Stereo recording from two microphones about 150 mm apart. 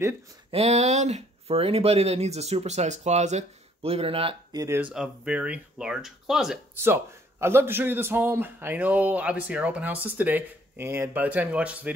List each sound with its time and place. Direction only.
0.5 s speech: 45° right (ahead or behind)
4.6 s a man's voice: 15° right (ahead or behind)
6.7 s a man's voice: 15° right (ahead or behind)